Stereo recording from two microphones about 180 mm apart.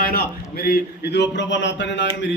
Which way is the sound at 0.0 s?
55° left (ahead or behind).